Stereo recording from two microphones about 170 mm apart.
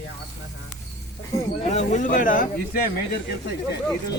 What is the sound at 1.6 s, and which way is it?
Speech, 45° left (ahead or behind).